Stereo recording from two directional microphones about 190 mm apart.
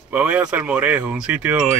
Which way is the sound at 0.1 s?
10° right (ahead or behind).